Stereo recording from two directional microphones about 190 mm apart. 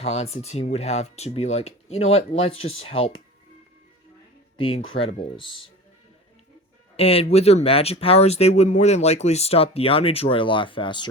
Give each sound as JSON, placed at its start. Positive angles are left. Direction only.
{"t": 0.0, "sound": "speech", "side_deg": 35}
{"t": 4.9, "sound": "speech", "side_deg": 30}
{"t": 6.9, "sound": "speech", "side_deg": 30}